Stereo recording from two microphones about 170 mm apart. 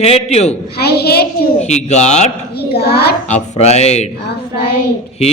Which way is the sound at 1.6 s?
40° left (ahead or behind).